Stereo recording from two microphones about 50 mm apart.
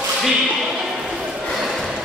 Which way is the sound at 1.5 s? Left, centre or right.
Centre.